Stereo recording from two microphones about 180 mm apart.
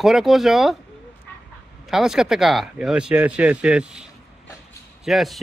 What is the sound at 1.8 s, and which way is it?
Speech, 5° right (ahead or behind).